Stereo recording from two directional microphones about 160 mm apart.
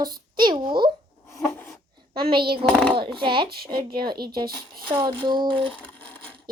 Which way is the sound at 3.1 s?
30° right (ahead or behind).